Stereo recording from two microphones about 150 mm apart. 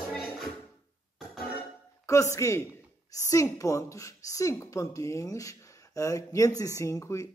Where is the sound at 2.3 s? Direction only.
20° left (ahead or behind).